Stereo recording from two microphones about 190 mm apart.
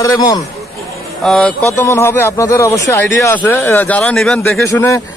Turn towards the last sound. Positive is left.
turn(degrees=15)  # may be behind; listen again after turning